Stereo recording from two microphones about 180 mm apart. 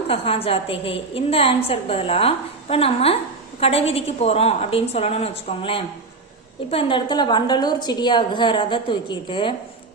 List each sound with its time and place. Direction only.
0.1 s a woman's voice: 30° left (ahead or behind)